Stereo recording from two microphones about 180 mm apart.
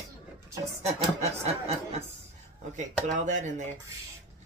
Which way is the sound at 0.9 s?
35° right (ahead or behind).